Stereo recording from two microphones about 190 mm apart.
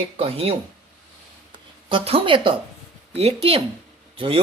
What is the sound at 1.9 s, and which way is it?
Speech, 30° right (ahead or behind).